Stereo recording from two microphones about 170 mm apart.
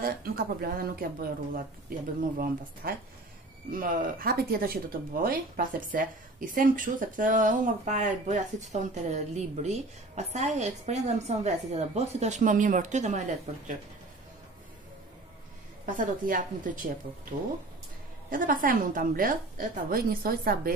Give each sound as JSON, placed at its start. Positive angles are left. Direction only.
{"t": 0.0, "sound": "speech", "side_deg": -60}
{"t": 15.8, "sound": "speech", "side_deg": -55}
{"t": 18.3, "sound": "speech", "side_deg": -55}